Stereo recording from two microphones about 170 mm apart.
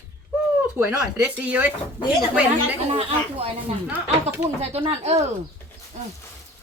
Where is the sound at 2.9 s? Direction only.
35° right (ahead or behind).